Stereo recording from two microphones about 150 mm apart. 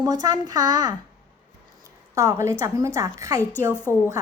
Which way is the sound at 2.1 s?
20° right (ahead or behind).